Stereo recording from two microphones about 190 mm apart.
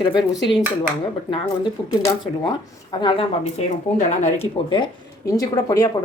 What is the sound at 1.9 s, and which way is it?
Speech, 20° left (ahead or behind).